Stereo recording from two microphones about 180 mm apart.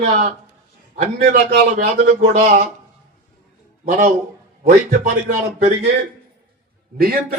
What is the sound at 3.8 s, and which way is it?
Speech, 45° right (ahead or behind).